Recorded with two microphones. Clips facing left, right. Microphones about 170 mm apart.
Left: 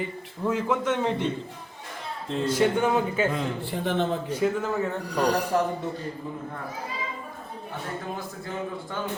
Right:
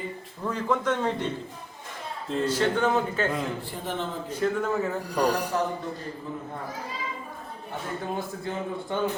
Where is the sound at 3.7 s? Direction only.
70° left (ahead or behind).